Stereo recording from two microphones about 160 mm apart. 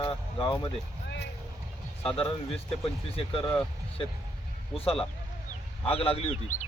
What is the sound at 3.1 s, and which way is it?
Speech, 35° left (ahead or behind).